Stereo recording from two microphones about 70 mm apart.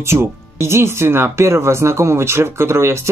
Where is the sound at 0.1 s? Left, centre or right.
Right.